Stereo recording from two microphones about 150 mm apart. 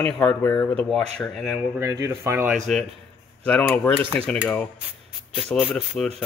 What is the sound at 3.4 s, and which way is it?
Speech, 10° left (ahead or behind).